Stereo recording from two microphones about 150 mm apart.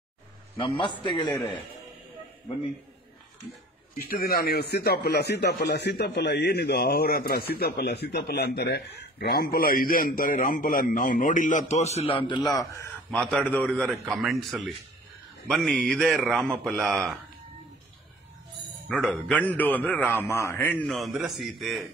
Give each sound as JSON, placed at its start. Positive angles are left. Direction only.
{"t": 0.6, "sound": "a man's voice", "side_deg": 35}
{"t": 3.9, "sound": "a man's voice", "side_deg": 80}
{"t": 13.1, "sound": "a man's voice", "side_deg": 10}
{"t": 18.9, "sound": "a man's voice", "side_deg": 5}